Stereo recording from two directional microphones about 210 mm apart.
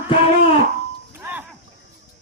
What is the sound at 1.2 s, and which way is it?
Music, 10° right (ahead or behind).